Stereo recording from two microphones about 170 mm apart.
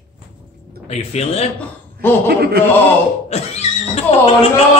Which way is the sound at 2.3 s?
65° right (ahead or behind).